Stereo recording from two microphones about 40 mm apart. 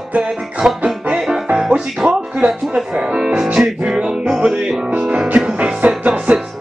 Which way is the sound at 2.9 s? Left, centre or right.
Centre.